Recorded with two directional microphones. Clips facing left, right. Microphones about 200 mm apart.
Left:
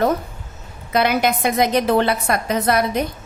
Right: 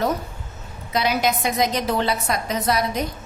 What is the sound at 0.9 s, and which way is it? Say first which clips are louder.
A woman's voice: left 4 dB; 60° left (ahead or behind).